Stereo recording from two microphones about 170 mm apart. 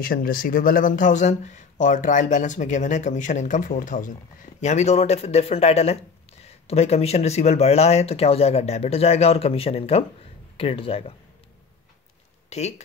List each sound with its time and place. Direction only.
0.0 s speech: 55° left (ahead or behind); by 11.1 s 35° left (ahead or behind)
12.4 s speech: 40° left (ahead or behind)